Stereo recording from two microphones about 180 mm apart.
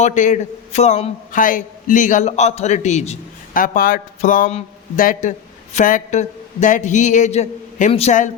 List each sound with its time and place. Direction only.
0.0 s a man's voice: 45° left (ahead or behind)